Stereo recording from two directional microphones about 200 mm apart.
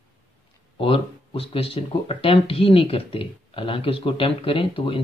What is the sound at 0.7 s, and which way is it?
Speech, 25° left (ahead or behind).